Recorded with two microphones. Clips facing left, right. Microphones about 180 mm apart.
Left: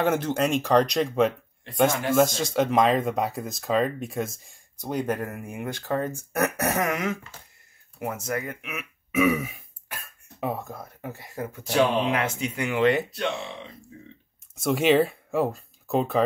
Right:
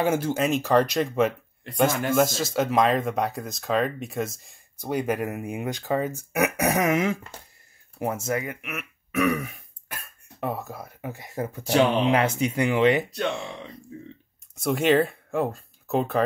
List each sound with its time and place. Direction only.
0.0 s speech: 10° right (ahead or behind); by 8.4 s 30° right (ahead or behind)
8.5 s speech: centre (ahead or behind)
11.1 s speech: 20° right (ahead or behind)
12.2 s speech: 40° right (ahead or behind)
13.3 s speech: centre (ahead or behind)